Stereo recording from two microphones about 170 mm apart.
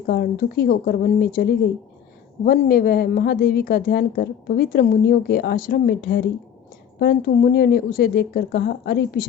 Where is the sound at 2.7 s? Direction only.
65° left (ahead or behind).